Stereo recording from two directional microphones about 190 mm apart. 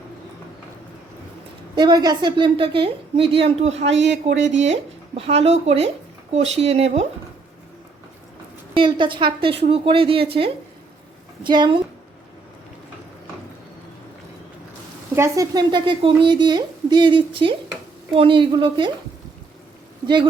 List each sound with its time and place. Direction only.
1.7 s a woman's voice: 20° right (ahead or behind)
3.8 s speech: 70° right (ahead or behind)
5.1 s speech: 30° right (ahead or behind)
8.7 s a woman's voice: 25° right (ahead or behind)
15.1 s a woman's voice: 15° right (ahead or behind)